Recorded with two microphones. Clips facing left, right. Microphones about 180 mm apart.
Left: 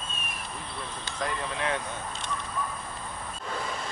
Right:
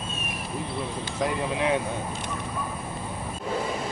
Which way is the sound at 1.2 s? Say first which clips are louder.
Right 5 dB; 10° right (ahead or behind).